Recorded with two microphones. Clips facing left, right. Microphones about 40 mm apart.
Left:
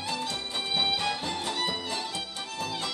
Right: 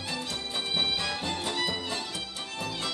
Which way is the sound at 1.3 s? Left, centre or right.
Centre.